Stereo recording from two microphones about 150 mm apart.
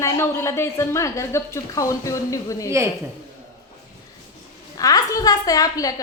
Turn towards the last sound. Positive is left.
turn(degrees=25)  # may be behind; listen again after turning